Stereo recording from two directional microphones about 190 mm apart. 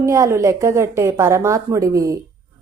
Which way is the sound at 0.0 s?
15° right (ahead or behind).